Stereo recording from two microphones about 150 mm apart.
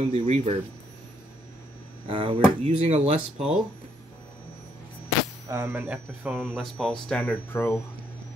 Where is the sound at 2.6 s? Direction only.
45° right (ahead or behind).